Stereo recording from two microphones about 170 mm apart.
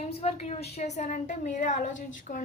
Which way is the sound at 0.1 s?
35° left (ahead or behind).